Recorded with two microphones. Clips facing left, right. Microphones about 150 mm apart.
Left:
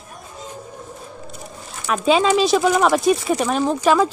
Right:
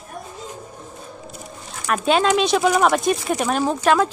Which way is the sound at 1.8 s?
Centre (ahead or behind).